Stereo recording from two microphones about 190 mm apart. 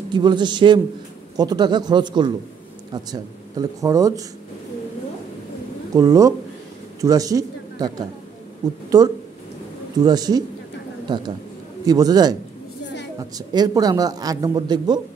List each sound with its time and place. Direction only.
0.1 s speech: 25° right (ahead or behind)
5.9 s a man's voice: 20° right (ahead or behind)
10.0 s speech: 20° right (ahead or behind)
11.8 s speech: 20° right (ahead or behind)